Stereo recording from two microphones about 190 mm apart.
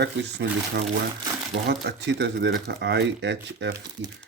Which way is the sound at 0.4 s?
65° right (ahead or behind).